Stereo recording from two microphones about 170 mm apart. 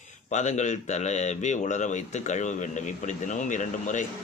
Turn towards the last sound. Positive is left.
turn(degrees=45)  # may be behind; listen again after turning